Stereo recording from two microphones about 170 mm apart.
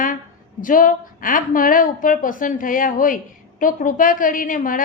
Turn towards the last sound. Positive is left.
turn(degrees=55)  # may be behind; listen again after turning